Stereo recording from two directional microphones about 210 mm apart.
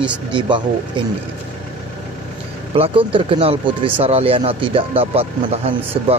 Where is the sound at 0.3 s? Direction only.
20° right (ahead or behind).